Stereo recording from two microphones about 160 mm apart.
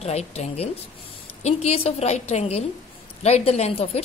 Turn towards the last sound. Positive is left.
turn(degrees=40)  # may be behind; listen again after turning